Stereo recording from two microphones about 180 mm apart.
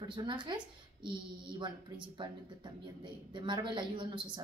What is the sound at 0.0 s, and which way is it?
Speech, 25° right (ahead or behind).